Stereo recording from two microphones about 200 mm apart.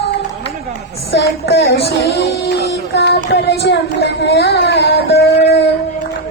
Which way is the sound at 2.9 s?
55° left (ahead or behind).